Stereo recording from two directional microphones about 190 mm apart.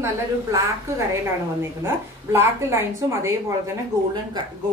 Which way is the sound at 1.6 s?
15° right (ahead or behind).